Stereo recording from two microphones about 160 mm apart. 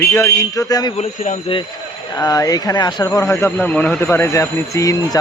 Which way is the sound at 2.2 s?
20° left (ahead or behind).